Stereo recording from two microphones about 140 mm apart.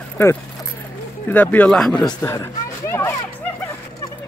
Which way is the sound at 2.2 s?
20° left (ahead or behind).